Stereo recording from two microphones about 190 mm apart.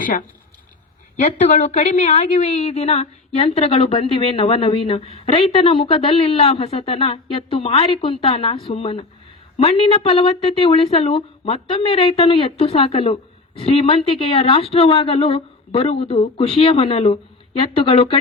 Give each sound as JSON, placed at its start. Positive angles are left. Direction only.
{"t": 0.0, "sound": "a woman's voice", "side_deg": 45}